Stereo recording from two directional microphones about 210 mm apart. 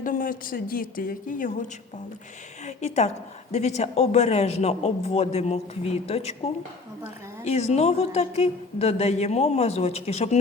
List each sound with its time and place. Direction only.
0.0 s a woman's voice: 40° left (ahead or behind)
2.6 s a sound: 35° left (ahead or behind)
3.5 s a woman's voice: 30° left (ahead or behind)
7.4 s a woman's voice: 30° left (ahead or behind)